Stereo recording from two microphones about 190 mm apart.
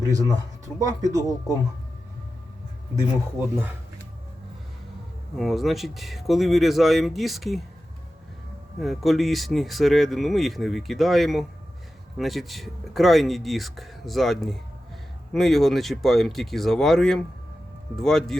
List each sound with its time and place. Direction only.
0.0 s speech: 20° right (ahead or behind)
5.4 s speech: centre (ahead or behind)
8.8 s speech: centre (ahead or behind)